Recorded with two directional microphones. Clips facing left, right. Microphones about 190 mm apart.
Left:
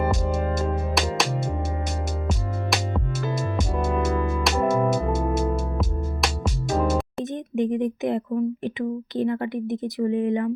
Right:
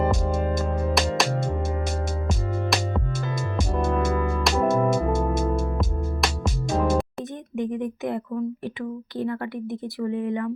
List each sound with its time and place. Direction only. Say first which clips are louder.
0.0 s music: right 1 dB; 10° left (ahead or behind)
7.5 s a sound: left 4 dB; 25° left (ahead or behind)
8.6 s speech: left 4 dB; 20° left (ahead or behind)